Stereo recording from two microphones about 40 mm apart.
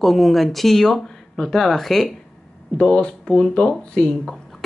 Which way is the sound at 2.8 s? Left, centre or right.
Left.